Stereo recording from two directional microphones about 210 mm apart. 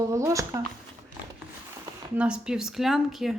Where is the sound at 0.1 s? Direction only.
15° right (ahead or behind).